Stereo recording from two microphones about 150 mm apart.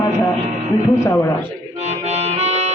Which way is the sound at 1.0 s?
20° left (ahead or behind).